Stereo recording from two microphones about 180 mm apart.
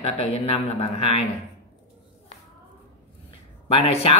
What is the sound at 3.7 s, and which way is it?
Speech, 35° left (ahead or behind).